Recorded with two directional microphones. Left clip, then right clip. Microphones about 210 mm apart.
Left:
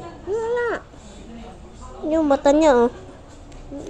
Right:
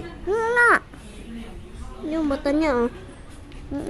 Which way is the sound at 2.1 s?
5° left (ahead or behind).